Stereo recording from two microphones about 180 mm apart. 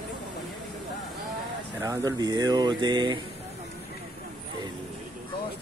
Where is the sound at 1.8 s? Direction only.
20° right (ahead or behind).